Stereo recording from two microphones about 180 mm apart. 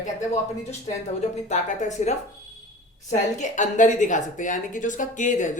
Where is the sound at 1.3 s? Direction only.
40° left (ahead or behind).